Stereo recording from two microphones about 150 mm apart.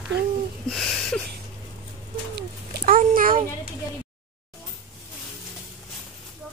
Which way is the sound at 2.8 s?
70° right (ahead or behind).